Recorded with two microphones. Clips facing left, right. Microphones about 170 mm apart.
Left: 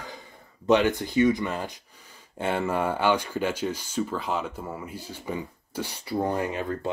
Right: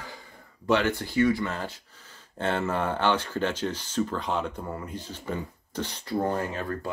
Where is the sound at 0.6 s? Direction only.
15° left (ahead or behind).